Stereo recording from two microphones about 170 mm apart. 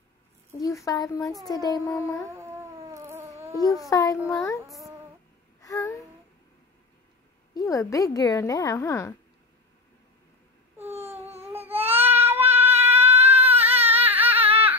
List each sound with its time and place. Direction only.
0.5 s a woman's voice: 20° left (ahead or behind)
1.2 s speech: centre (ahead or behind)
1.5 s speech: 20° left (ahead or behind)
2.2 s cat: 15° right (ahead or behind)
3.8 s a woman's voice: 20° left (ahead or behind)
5.6 s a sound: 20° left (ahead or behind)
7.5 s a woman's voice: 20° left (ahead or behind)
10.9 s baby cry: 40° right (ahead or behind)
11.4 s baby cry: 10° right (ahead or behind)
11.9 s a sound: 10° right (ahead or behind)